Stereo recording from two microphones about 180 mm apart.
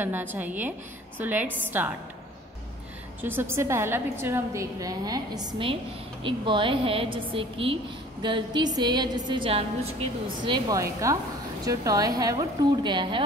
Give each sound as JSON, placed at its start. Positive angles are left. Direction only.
{"t": 0.0, "sound": "a woman's voice", "side_deg": -10}
{"t": 3.2, "sound": "a woman's voice", "side_deg": -10}
{"t": 10.4, "sound": "a woman's voice", "side_deg": -20}